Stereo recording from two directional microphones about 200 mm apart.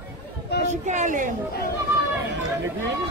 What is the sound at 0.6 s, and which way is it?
Speech, 35° right (ahead or behind).